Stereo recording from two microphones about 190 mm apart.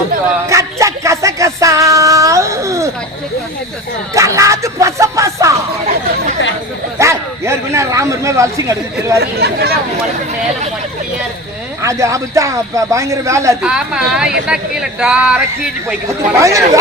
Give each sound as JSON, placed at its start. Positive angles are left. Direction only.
{"t": 0.4, "sound": "speech", "side_deg": -15}
{"t": 4.1, "sound": "speech", "side_deg": -15}
{"t": 7.0, "sound": "speech", "side_deg": -15}
{"t": 9.2, "sound": "speech", "side_deg": -60}
{"t": 11.8, "sound": "speech", "side_deg": -15}
{"t": 13.6, "sound": "speech", "side_deg": -5}
{"t": 16.4, "sound": "speech", "side_deg": -15}